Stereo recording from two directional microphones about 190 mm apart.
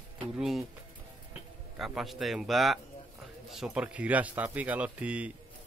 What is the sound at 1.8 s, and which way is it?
Speech, centre (ahead or behind).